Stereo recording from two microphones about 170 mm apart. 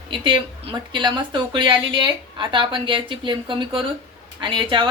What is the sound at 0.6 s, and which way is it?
A woman's voice, 30° right (ahead or behind).